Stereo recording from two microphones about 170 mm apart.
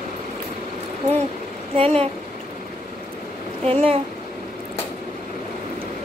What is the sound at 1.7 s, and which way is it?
Speech, 35° right (ahead or behind).